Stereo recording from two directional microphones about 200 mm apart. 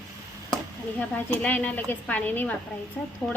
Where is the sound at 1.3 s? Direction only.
10° left (ahead or behind).